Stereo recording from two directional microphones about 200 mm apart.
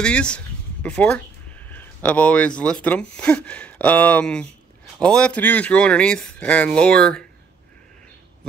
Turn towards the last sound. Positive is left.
turn(degrees=5)  # may be behind; listen again after turning